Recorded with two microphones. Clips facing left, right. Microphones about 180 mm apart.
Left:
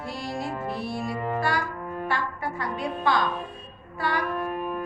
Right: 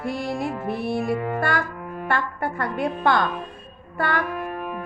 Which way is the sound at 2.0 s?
55° right (ahead or behind).